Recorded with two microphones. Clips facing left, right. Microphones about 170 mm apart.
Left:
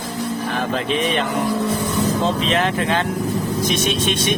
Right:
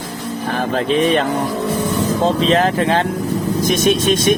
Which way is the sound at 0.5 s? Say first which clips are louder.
Right 7 dB; 40° right (ahead or behind).